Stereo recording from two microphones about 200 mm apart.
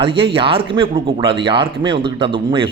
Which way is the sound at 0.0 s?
25° right (ahead or behind).